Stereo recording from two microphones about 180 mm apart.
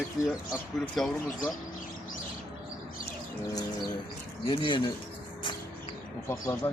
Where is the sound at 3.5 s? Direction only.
20° left (ahead or behind).